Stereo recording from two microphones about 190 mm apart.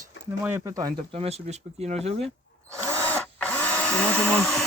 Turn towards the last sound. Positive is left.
turn(degrees=5)  # may be behind; listen again after turning